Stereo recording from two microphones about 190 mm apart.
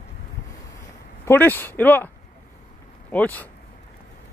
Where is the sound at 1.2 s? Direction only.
10° left (ahead or behind).